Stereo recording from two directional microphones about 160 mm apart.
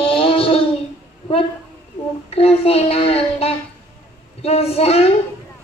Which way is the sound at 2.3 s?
40° left (ahead or behind).